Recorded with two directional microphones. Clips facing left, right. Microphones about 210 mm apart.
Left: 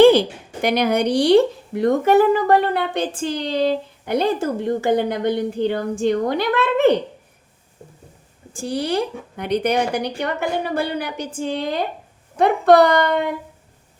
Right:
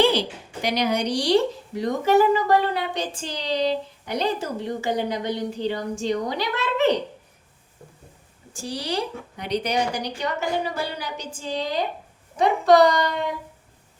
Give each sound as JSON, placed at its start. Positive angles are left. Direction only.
{"t": 0.0, "sound": "a woman's voice", "side_deg": 50}
{"t": 8.5, "sound": "a woman's voice", "side_deg": 55}